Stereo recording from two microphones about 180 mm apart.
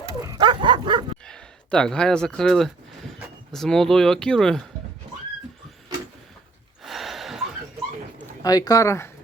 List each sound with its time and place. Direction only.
0.2 s bow-wow: 20° right (ahead or behind)
1.2 s speech: 5° left (ahead or behind)
6.8 s gasp: centre (ahead or behind)
8.4 s speech: 20° left (ahead or behind)